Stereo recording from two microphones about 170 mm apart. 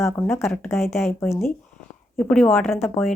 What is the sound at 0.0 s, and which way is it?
Speech, 15° left (ahead or behind).